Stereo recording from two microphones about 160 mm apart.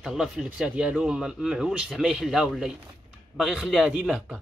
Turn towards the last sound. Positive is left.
turn(degrees=-5)  # may be behind; listen again after turning